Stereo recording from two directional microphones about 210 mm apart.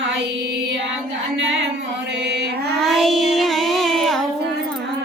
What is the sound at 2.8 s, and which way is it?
Child singing, centre (ahead or behind).